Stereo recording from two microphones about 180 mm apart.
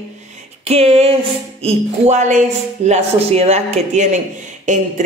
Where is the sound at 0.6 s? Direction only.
35° right (ahead or behind).